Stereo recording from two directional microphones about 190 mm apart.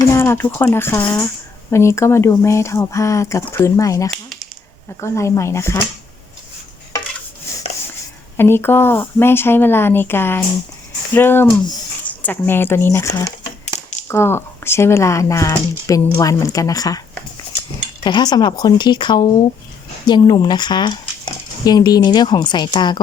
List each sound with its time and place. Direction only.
0.1 s speech: 15° left (ahead or behind)
8.4 s speech: 10° left (ahead or behind)
18.0 s speech: 20° left (ahead or behind)